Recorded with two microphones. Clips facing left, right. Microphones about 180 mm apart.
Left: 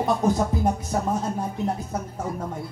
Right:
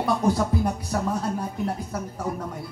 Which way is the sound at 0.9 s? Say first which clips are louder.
Left 1 dB; 20° left (ahead or behind).